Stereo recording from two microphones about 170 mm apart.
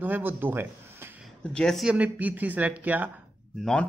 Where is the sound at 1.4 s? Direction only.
5° left (ahead or behind).